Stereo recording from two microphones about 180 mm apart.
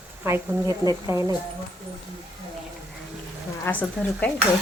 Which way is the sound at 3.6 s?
10° left (ahead or behind).